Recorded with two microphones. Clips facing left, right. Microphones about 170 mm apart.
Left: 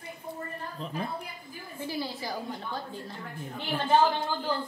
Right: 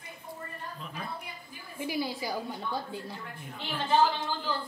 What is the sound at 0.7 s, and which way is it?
Speech, 30° left (ahead or behind).